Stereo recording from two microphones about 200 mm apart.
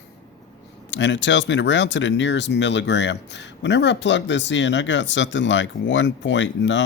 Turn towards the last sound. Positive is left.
turn(degrees=65)  # may be behind; listen again after turning